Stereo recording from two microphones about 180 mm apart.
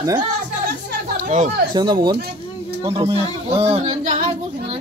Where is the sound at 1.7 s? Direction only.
25° right (ahead or behind).